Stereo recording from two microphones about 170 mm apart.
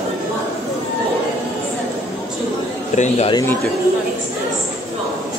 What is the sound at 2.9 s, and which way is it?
Speech, 40° left (ahead or behind).